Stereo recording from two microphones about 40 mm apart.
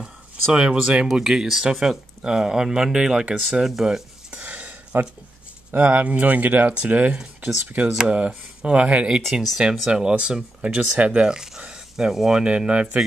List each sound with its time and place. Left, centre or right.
0.0 s speech: right
1.2 s speech: centre
4.3 s a sound: right
5.7 s speech: right
6.8 s speech: right
7.2 s speech: centre
9.2 s speech: centre
9.8 s speech: centre
11.0 s speech: right
11.2 s speech: centre; by 13.0 s right